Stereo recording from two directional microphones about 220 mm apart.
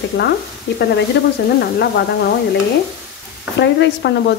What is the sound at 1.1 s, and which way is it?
Speech, 50° left (ahead or behind).